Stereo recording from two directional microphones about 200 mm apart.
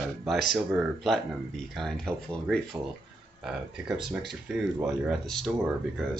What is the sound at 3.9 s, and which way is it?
Speech, 5° right (ahead or behind).